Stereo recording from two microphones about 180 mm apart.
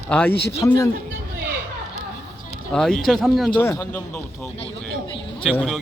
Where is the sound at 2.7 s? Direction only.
5° left (ahead or behind).